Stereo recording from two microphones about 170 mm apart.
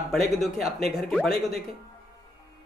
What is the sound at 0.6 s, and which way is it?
Speech, 40° right (ahead or behind).